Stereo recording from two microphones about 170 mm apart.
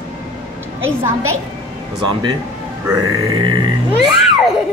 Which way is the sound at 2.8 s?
25° right (ahead or behind).